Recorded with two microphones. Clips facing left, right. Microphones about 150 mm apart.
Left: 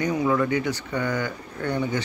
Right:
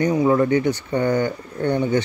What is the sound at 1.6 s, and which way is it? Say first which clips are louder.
Speech: right 6 dB; 25° right (ahead or behind).